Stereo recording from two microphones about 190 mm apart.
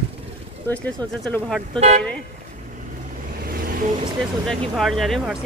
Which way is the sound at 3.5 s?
50° right (ahead or behind).